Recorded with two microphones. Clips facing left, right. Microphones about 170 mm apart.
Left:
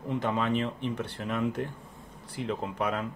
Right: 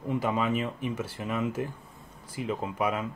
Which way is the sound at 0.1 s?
5° right (ahead or behind).